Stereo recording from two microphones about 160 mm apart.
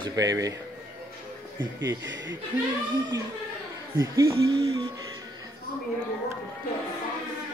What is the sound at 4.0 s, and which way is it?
Speech, 20° right (ahead or behind).